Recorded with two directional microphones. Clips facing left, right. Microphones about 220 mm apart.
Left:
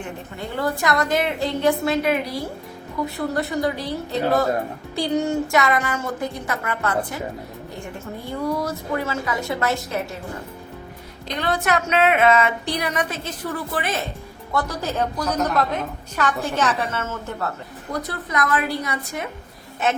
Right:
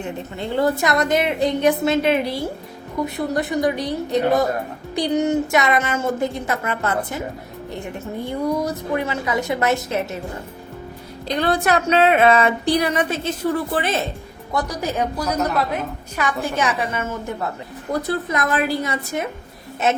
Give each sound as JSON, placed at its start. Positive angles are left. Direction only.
{"t": 0.0, "sound": "a woman's voice", "side_deg": -25}
{"t": 11.4, "sound": "a woman's voice", "side_deg": -35}
{"t": 14.5, "sound": "a woman's voice", "side_deg": -15}
{"t": 18.3, "sound": "a woman's voice", "side_deg": -25}